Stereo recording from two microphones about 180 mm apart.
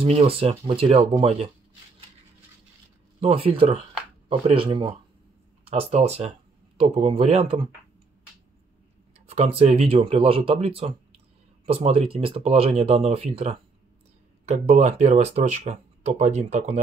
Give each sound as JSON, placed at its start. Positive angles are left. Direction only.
{"t": 0.0, "sound": "speech", "side_deg": -30}
{"t": 3.2, "sound": "speech", "side_deg": -30}
{"t": 9.5, "sound": "speech", "side_deg": -35}